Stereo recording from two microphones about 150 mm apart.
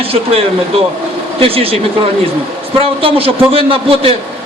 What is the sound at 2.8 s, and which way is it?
A man's voice, 40° right (ahead or behind).